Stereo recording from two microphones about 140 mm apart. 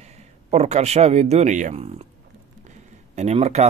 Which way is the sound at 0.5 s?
50° right (ahead or behind).